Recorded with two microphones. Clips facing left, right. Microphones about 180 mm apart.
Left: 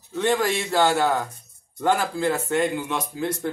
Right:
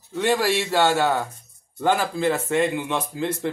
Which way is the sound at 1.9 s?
20° right (ahead or behind).